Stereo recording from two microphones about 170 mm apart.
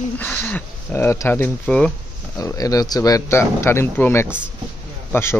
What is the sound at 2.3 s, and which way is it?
Speech, 20° left (ahead or behind).